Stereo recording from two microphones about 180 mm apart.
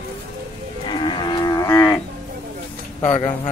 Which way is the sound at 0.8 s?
25° left (ahead or behind).